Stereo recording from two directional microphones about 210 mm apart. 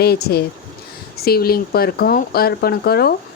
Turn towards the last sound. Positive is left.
turn(degrees=50)  # may be behind; listen again after turning